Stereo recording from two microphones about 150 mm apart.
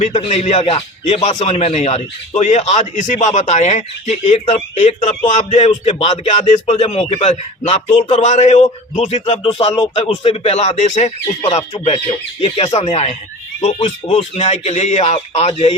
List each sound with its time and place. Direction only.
0.0 s a man's voice: 45° left (ahead or behind)
11.4 s a man's voice: 35° left (ahead or behind)